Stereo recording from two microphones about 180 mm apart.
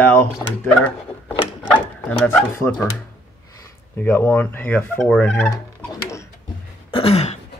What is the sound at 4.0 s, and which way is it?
Fowl, 10° left (ahead or behind).